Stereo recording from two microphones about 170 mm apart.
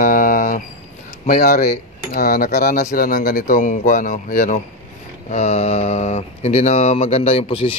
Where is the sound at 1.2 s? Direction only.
55° left (ahead or behind).